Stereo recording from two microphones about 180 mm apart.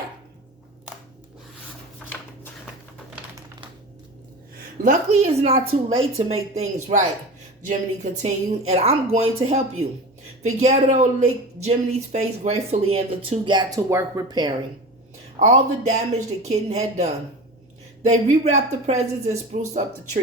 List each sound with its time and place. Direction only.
4.8 s speech: 40° right (ahead or behind); by 14.5 s 25° right (ahead or behind)
15.4 s speech: 45° right (ahead or behind)